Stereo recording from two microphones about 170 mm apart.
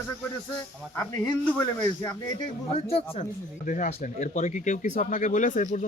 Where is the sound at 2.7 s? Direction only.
35° left (ahead or behind).